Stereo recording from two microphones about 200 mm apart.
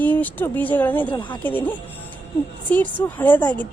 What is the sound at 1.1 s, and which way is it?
Speech, 25° left (ahead or behind).